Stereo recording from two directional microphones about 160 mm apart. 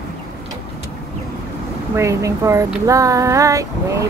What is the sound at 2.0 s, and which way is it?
Speech, 20° right (ahead or behind).